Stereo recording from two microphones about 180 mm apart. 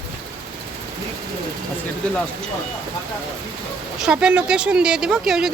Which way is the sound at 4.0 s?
5° right (ahead or behind).